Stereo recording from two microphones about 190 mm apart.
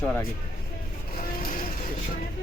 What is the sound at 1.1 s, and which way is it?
Vehicle, 50° left (ahead or behind).